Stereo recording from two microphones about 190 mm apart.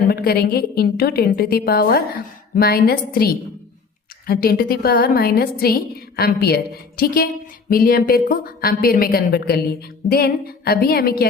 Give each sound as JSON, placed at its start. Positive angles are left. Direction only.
{"t": 0.1, "sound": "a woman's voice", "side_deg": 55}